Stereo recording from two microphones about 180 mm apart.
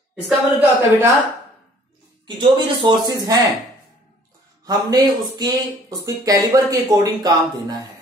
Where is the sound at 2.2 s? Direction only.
25° right (ahead or behind).